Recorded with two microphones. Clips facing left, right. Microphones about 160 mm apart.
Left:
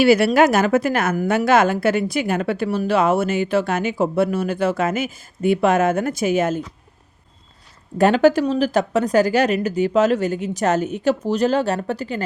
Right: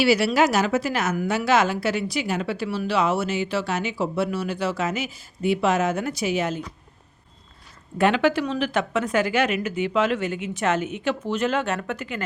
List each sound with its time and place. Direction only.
0.0 s a woman's voice: 50° left (ahead or behind)
7.9 s speech: 40° left (ahead or behind)